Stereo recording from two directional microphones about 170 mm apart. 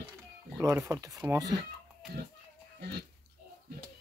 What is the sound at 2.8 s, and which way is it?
Pig, 70° right (ahead or behind).